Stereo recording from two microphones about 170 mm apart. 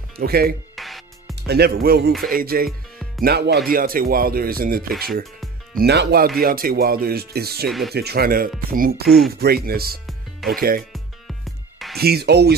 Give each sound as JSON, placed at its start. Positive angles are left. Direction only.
{"t": 0.2, "sound": "speech", "side_deg": -65}
{"t": 0.7, "sound": "music", "side_deg": 0}
{"t": 1.3, "sound": "speech", "side_deg": -70}
{"t": 5.8, "sound": "speech", "side_deg": -70}
{"t": 7.6, "sound": "speech", "side_deg": 0}
{"t": 7.9, "sound": "speech", "side_deg": -70}
{"t": 10.8, "sound": "music", "side_deg": 0}
{"t": 12.0, "sound": "speech", "side_deg": -70}